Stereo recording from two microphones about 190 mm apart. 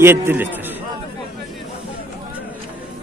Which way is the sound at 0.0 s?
10° right (ahead or behind).